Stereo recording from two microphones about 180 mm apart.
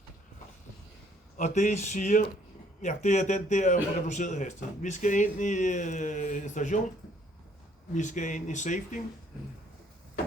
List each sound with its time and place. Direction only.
1.4 s a man's voice: 40° left (ahead or behind)
7.9 s a man's voice: 45° left (ahead or behind)